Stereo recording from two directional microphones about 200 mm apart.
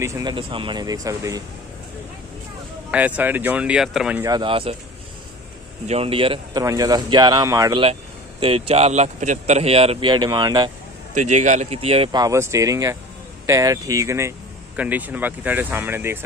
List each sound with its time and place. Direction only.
0.0 s speech: 20° right (ahead or behind)
2.9 s speech: 5° right (ahead or behind)
4.2 s speech: 20° right (ahead or behind)
5.9 s speech: 30° right (ahead or behind)
7.8 s speech: 30° right (ahead or behind)
11.1 s speech: 35° right (ahead or behind); by 16.3 s 10° right (ahead or behind)